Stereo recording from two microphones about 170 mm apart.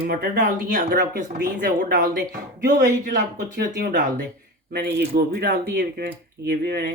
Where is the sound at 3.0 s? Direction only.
70° right (ahead or behind).